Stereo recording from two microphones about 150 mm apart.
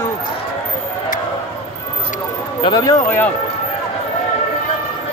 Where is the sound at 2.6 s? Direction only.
25° left (ahead or behind).